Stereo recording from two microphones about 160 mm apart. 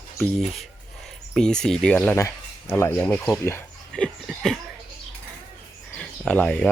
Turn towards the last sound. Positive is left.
turn(degrees=10)  # may be behind; listen again after turning